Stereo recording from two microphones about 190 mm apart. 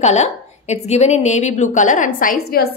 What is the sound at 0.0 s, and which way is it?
A woman's voice, 35° left (ahead or behind).